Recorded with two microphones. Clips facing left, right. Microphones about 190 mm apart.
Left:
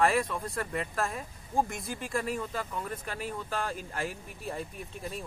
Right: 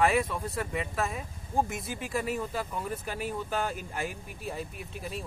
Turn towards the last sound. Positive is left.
turn(degrees=-5)  # may be behind; listen again after turning